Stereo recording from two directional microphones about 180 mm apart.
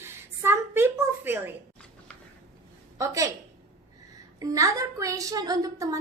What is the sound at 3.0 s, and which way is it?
Speech, 20° right (ahead or behind).